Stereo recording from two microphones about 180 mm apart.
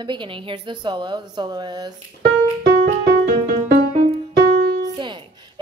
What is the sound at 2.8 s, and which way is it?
Music, 50° right (ahead or behind).